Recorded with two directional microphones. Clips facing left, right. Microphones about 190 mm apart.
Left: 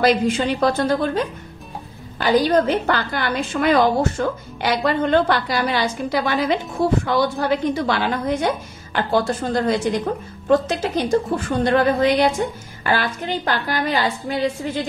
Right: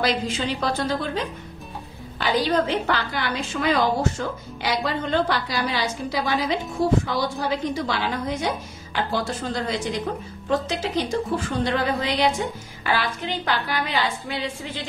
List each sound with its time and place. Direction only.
0.0 s a woman's voice: 55° left (ahead or behind)